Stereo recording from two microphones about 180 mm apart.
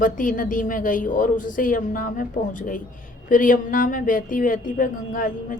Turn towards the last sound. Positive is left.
turn(degrees=50)  # may be behind; listen again after turning